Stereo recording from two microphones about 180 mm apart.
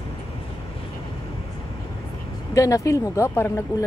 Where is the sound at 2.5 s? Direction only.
20° left (ahead or behind).